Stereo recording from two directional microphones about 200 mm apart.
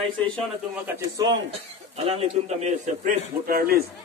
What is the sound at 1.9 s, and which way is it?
A man's voice, 30° right (ahead or behind).